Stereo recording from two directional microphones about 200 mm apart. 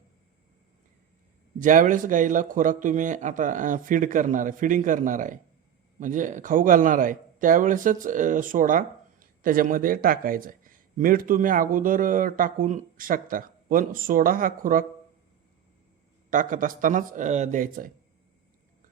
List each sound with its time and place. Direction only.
1.5 s speech: 40° right (ahead or behind)
16.3 s speech: 40° right (ahead or behind)